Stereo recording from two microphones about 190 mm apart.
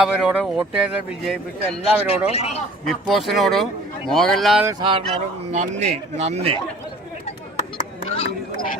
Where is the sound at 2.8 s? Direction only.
Centre (ahead or behind).